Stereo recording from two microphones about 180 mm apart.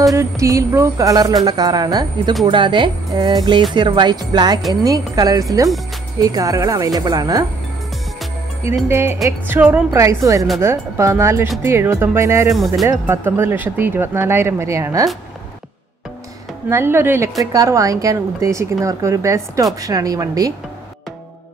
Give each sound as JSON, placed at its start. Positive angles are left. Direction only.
{"t": 0.1, "sound": "a woman's voice", "side_deg": -15}
{"t": 8.6, "sound": "speech", "side_deg": -15}
{"t": 16.6, "sound": "a woman's voice", "side_deg": -15}